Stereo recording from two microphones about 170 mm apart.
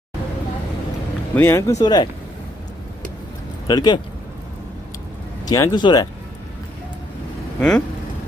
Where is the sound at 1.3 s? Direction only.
15° left (ahead or behind).